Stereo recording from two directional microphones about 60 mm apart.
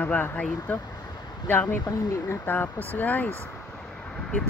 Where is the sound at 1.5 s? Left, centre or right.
Left.